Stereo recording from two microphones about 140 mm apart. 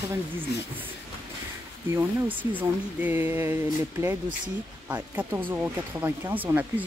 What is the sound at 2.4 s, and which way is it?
Speech, 10° right (ahead or behind).